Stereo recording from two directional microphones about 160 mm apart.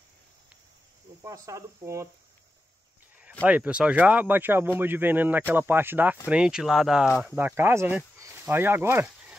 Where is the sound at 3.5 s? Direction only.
10° right (ahead or behind).